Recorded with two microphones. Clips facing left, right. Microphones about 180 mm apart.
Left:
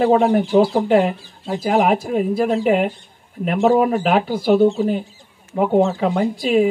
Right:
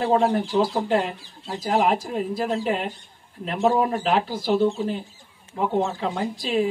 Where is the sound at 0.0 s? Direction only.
65° left (ahead or behind).